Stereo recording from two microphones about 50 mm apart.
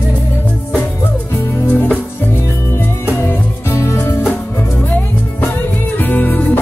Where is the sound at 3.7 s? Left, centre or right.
Left.